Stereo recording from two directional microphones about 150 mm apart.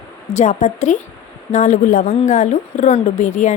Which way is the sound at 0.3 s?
50° left (ahead or behind).